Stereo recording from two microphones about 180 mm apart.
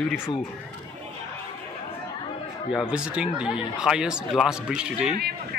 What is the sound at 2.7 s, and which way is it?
Speech, 5° right (ahead or behind).